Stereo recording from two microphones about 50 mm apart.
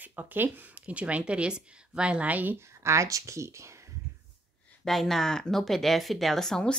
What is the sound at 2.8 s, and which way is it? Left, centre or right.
Speech, right.